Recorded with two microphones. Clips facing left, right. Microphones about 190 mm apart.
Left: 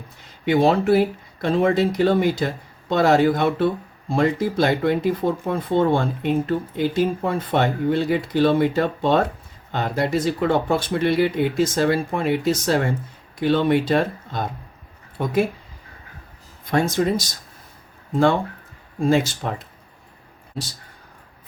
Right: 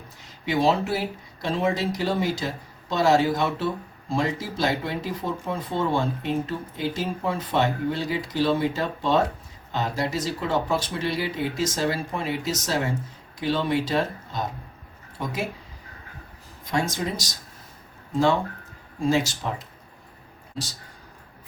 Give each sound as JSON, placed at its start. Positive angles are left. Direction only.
{"t": 0.4, "sound": "speech", "side_deg": 55}
{"t": 16.7, "sound": "speech", "side_deg": 55}
{"t": 18.9, "sound": "speech", "side_deg": 55}